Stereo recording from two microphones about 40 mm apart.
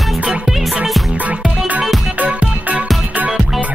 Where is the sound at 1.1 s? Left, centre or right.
Right.